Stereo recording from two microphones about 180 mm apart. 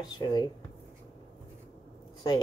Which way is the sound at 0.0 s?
25° left (ahead or behind).